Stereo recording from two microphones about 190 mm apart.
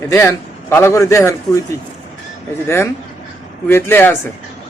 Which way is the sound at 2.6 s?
15° left (ahead or behind).